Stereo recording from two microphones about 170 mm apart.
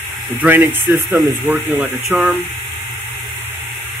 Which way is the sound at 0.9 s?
Centre (ahead or behind).